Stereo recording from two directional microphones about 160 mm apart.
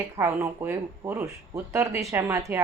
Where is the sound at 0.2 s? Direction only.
15° right (ahead or behind).